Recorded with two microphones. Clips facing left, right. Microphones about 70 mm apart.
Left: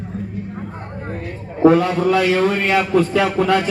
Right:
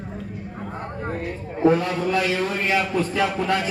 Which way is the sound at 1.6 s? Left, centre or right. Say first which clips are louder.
Left 6 dB; left.